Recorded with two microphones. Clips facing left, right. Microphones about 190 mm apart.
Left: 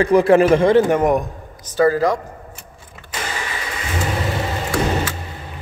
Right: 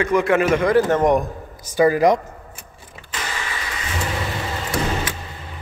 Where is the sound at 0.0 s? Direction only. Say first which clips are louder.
Left 5 dB; 35° left (ahead or behind).